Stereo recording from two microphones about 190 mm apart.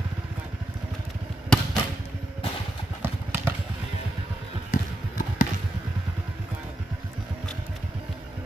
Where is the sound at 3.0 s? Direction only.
10° right (ahead or behind).